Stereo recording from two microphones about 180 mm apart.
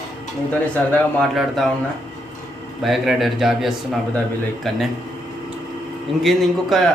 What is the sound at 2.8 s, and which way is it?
A man's voice, centre (ahead or behind).